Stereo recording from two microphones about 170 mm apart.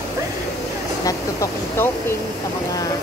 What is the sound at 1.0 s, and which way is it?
Speech, 15° left (ahead or behind).